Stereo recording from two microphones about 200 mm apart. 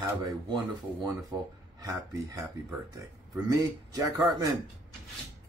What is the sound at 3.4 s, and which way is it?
Speech, 20° right (ahead or behind).